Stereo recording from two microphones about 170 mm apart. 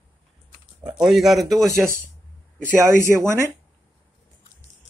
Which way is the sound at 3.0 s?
15° right (ahead or behind).